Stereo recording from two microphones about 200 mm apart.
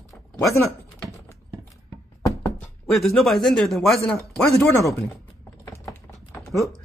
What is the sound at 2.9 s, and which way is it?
Speech, centre (ahead or behind).